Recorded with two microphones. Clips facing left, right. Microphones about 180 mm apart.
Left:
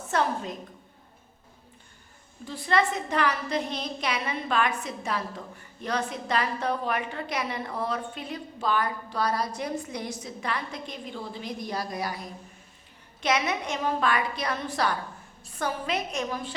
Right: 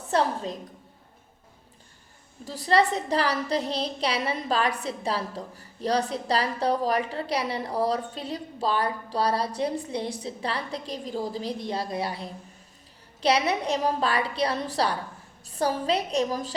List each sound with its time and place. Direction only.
0.1 s a woman's voice: 30° right (ahead or behind)
2.4 s a woman's voice: 35° right (ahead or behind)